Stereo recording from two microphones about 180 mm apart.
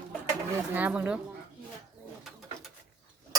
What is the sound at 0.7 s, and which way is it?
Speech, 10° right (ahead or behind).